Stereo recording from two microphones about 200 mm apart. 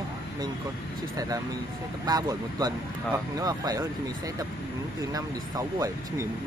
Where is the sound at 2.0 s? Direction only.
20° right (ahead or behind).